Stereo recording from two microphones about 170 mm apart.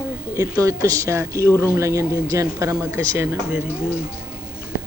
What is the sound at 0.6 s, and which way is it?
Speech, 20° right (ahead or behind).